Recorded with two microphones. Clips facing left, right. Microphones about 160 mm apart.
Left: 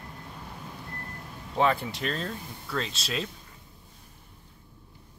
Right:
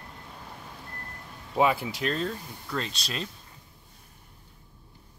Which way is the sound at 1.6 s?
5° right (ahead or behind).